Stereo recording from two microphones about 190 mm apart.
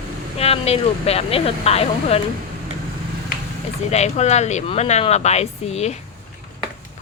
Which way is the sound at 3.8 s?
35° left (ahead or behind).